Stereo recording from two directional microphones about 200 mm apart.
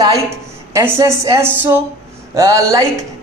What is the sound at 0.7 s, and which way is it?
A man's voice, 15° right (ahead or behind).